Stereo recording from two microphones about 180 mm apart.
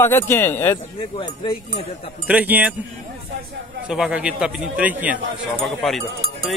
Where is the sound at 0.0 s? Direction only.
15° left (ahead or behind).